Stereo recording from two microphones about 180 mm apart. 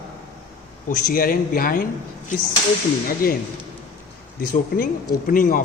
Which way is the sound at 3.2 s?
55° left (ahead or behind).